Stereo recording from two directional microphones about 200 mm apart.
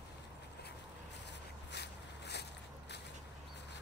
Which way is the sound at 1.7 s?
55° left (ahead or behind).